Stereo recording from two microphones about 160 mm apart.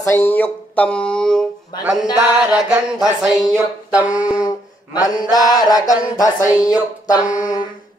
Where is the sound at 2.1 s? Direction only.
5° right (ahead or behind).